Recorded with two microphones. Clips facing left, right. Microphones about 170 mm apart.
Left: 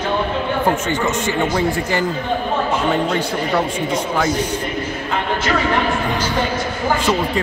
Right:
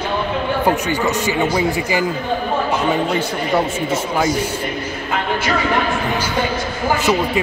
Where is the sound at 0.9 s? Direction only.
35° right (ahead or behind).